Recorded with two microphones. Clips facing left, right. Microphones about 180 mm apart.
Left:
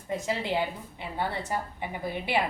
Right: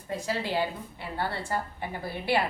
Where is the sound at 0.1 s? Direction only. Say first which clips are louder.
Left 1 dB; 20° left (ahead or behind).